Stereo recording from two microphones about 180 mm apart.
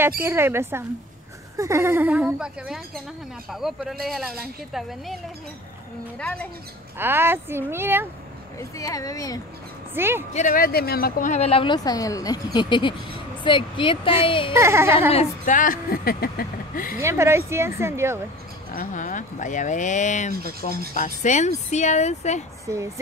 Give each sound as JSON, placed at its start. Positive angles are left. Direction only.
{"t": 0.2, "sound": "speech", "side_deg": -15}
{"t": 7.0, "sound": "speech", "side_deg": -10}
{"t": 8.5, "sound": "speech", "side_deg": 20}
{"t": 9.9, "sound": "speech", "side_deg": -15}
{"t": 10.3, "sound": "speech", "side_deg": 45}
{"t": 14.5, "sound": "speech", "side_deg": -15}
{"t": 15.0, "sound": "a woman's voice", "side_deg": 40}
{"t": 17.0, "sound": "speech", "side_deg": -15}
{"t": 18.7, "sound": "a woman's voice", "side_deg": 45}